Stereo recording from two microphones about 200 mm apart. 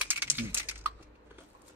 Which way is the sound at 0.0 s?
10° right (ahead or behind).